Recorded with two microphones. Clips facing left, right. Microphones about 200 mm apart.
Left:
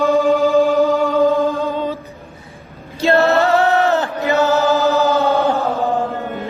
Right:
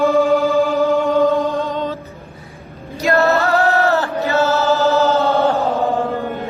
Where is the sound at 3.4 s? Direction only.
20° left (ahead or behind).